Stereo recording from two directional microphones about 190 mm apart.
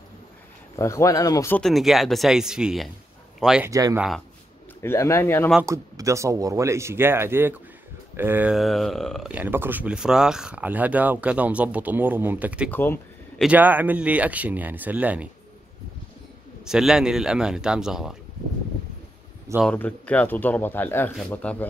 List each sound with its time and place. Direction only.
0.7 s speech: 15° left (ahead or behind)
1.6 s a man's voice: centre (ahead or behind)
3.7 s speech: 15° right (ahead or behind)
4.8 s speech: 15° left (ahead or behind)
5.7 s speech: 15° right (ahead or behind)
12.7 s speech: 10° left (ahead or behind)
13.4 s speech: 10° right (ahead or behind)
16.6 s a man's voice: 5° right (ahead or behind)
19.6 s speech: 5° left (ahead or behind)